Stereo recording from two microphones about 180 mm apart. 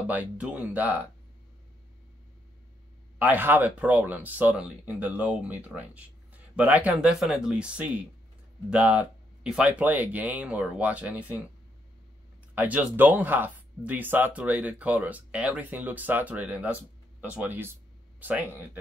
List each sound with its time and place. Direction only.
0.1 s speech: 10° right (ahead or behind)
3.2 s speech: 10° right (ahead or behind)
12.5 s speech: 10° right (ahead or behind)